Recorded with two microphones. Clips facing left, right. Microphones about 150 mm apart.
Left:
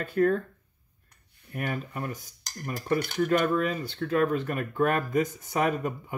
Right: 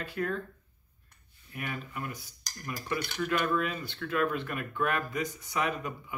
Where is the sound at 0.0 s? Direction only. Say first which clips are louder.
Left 9 dB; 45° left (ahead or behind).